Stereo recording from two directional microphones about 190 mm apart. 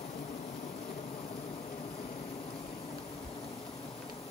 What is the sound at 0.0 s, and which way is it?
Vehicle, 35° left (ahead or behind).